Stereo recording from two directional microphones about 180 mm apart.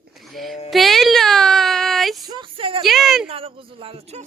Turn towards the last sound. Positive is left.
turn(degrees=-30)  # may be behind; listen again after turning